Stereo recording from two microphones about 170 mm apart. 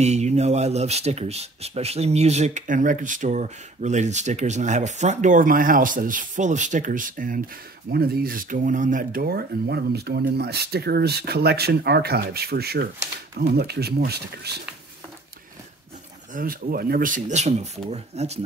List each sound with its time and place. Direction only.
0.0 s speech: 40° right (ahead or behind)
7.9 s speech: 65° right (ahead or behind)
16.3 s speech: 60° right (ahead or behind); by 18.4 s 40° right (ahead or behind)